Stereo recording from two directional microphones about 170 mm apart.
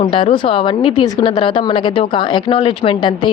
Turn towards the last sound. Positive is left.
turn(degrees=30)  # may be behind; listen again after turning